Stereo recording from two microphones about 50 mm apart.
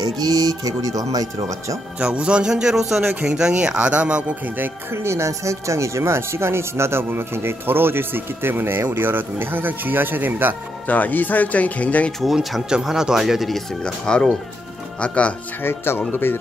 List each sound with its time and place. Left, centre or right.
2.0 s speech: centre
5.0 s speech: right
10.9 s speech: left
12.6 s speech: centre
13.8 s speech: centre
15.6 s speech: left